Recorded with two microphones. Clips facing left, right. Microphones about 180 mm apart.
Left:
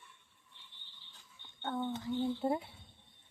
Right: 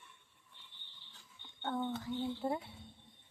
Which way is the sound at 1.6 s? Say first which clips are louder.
Even; 5° left (ahead or behind).